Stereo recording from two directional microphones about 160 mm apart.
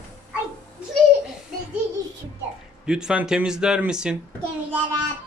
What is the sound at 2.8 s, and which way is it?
Speech, 5° right (ahead or behind).